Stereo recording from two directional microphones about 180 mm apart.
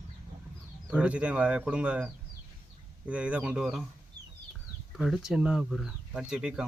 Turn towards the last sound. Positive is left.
turn(degrees=-5)  # may be behind; listen again after turning